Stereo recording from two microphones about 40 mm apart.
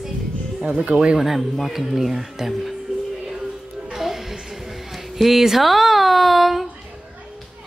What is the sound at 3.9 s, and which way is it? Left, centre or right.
Music, centre.